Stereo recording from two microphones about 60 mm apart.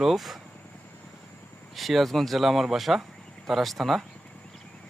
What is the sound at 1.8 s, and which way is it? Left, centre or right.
Speech, centre.